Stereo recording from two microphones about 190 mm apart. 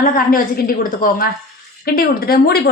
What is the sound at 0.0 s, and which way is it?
A woman's voice, 45° left (ahead or behind).